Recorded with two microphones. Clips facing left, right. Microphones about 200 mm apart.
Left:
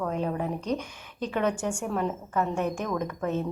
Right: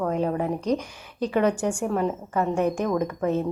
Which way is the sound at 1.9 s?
10° right (ahead or behind).